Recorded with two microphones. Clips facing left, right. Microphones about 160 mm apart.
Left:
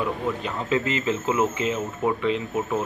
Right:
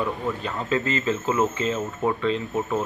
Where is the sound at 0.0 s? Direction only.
10° left (ahead or behind).